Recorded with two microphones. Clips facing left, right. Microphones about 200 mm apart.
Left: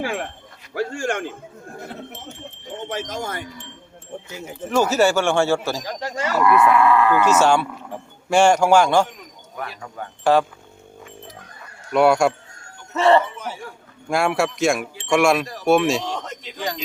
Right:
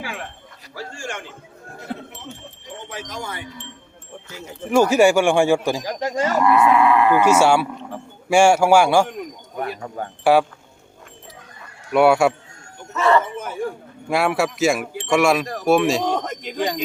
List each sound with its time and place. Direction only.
0.0 s speech: 45° left (ahead or behind)
0.7 s a man's voice: 60° left (ahead or behind)
2.9 s wind chime: 45° left (ahead or behind)
4.3 s speech: 20° left (ahead or behind)
4.7 s cattle: 15° right (ahead or behind)
9.6 s speech: 40° right (ahead or behind)
11.9 s a man's voice: 5° right (ahead or behind)
12.9 s speech: 30° left (ahead or behind)
13.3 s chatter: 50° right (ahead or behind)
14.1 s a man's voice: centre (ahead or behind)
16.0 s speech: 55° right (ahead or behind)